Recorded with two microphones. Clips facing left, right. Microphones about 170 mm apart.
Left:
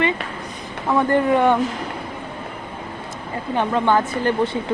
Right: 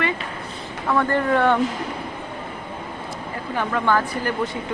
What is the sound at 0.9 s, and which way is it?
Speech, 15° left (ahead or behind).